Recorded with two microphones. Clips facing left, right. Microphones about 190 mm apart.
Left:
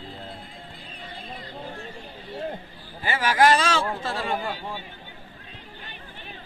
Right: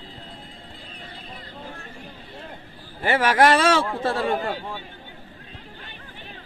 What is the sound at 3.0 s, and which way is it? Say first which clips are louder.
A man's voice: right 2 dB; 60° right (ahead or behind).